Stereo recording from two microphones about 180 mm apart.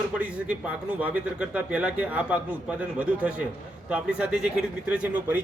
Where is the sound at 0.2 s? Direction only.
5° right (ahead or behind).